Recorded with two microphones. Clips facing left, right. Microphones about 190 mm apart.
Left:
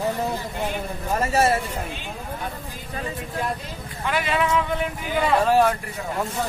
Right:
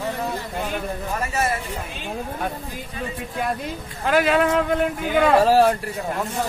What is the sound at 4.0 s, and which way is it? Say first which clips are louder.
Speech: right 5 dB; 45° right (ahead or behind).